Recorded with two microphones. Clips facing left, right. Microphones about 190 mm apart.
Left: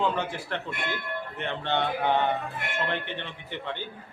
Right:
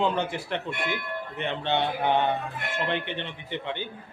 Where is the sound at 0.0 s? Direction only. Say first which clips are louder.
Right 2 dB; 20° right (ahead or behind).